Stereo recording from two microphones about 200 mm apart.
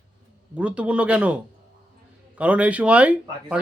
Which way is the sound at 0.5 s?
5° right (ahead or behind).